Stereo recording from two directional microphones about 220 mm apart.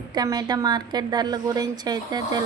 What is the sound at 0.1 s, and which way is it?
A woman's voice, 20° right (ahead or behind).